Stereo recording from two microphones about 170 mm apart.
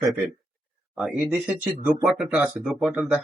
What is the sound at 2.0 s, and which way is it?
Speech, 5° right (ahead or behind).